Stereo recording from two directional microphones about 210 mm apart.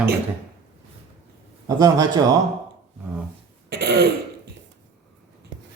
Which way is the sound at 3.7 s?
50° right (ahead or behind).